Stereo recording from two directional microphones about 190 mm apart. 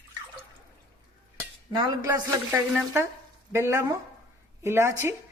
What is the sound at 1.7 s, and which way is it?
Cutlery, 20° right (ahead or behind).